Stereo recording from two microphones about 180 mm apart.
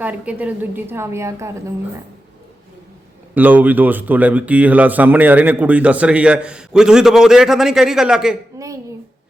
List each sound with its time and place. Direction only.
0.0 s speech: 10° right (ahead or behind)
3.3 s speech: 10° right (ahead or behind)
8.5 s a woman's voice: 15° right (ahead or behind)